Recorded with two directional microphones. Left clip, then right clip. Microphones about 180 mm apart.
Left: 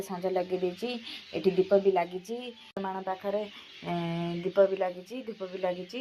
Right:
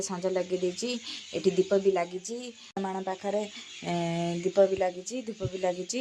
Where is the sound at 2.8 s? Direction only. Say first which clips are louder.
Right 1 dB; 30° right (ahead or behind).